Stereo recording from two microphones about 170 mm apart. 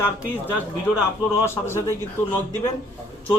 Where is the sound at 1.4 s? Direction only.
15° left (ahead or behind).